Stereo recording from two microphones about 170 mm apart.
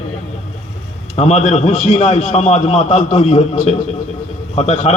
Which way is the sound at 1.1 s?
40° left (ahead or behind).